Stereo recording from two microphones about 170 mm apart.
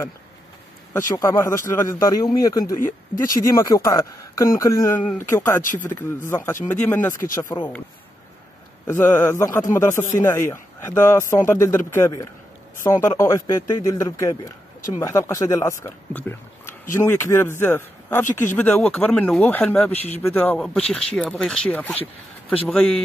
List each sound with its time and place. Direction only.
0.9 s a man's voice: 15° left (ahead or behind)
5.6 s speech: 50° left (ahead or behind)
6.0 s a man's voice: 15° left (ahead or behind)
8.8 s a man's voice: 15° left (ahead or behind)